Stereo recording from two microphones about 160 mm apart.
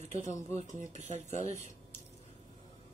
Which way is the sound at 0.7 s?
50° right (ahead or behind).